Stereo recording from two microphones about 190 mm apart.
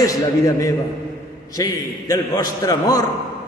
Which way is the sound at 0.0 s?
15° left (ahead or behind).